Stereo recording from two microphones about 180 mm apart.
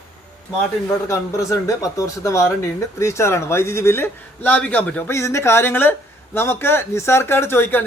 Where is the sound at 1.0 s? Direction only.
15° left (ahead or behind).